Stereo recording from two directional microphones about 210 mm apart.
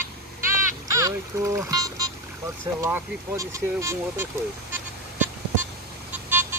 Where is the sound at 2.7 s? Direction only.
10° right (ahead or behind).